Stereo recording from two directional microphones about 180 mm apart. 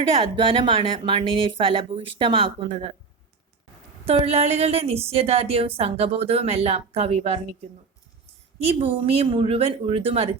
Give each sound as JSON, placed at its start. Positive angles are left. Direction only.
{"t": 0.2, "sound": "speech", "side_deg": -30}
{"t": 4.0, "sound": "a woman's voice", "side_deg": -35}